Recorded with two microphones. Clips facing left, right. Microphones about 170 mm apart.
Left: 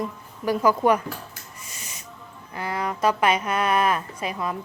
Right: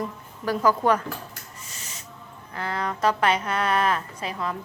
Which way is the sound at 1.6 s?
10° left (ahead or behind).